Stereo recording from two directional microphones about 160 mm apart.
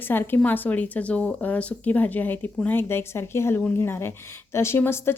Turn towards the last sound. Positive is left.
turn(degrees=15)  # may be behind; listen again after turning